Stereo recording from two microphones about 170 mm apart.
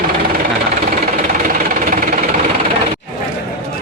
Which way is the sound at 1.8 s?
55° right (ahead or behind).